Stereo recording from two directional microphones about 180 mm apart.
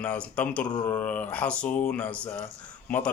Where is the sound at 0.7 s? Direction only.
20° left (ahead or behind).